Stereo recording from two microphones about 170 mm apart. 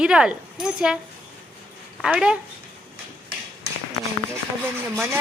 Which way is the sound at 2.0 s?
5° right (ahead or behind).